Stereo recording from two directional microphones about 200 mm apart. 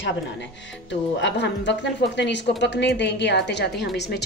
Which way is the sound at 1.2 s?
60° left (ahead or behind).